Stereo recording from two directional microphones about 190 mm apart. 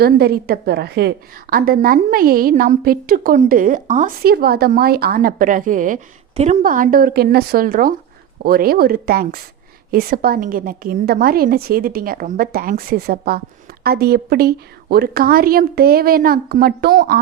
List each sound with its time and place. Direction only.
0.0 s a woman's voice: 55° right (ahead or behind)
4.2 s a woman's voice: 55° right (ahead or behind)